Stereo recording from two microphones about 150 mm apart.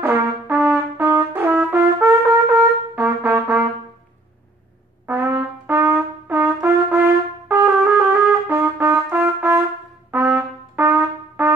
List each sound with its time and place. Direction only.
0.0 s brass instrument: 15° right (ahead or behind)
5.0 s brass instrument: 15° right (ahead or behind)
10.1 s trumpet: 15° right (ahead or behind)